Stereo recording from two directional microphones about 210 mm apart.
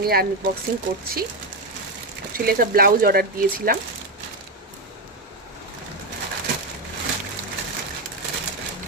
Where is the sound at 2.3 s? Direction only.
45° right (ahead or behind).